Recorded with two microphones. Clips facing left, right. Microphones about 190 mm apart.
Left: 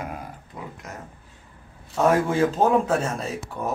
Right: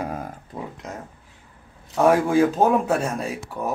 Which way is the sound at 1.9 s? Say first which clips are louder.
Right 3 dB; 10° right (ahead or behind).